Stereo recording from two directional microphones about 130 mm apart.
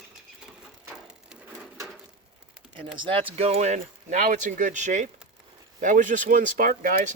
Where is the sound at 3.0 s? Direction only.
45° right (ahead or behind); by 5.1 s 70° right (ahead or behind).